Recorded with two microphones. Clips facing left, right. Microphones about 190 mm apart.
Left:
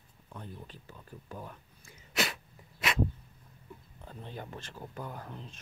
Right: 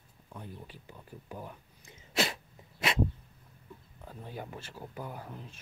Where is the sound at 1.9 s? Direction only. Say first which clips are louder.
Right 2 dB; 25° right (ahead or behind).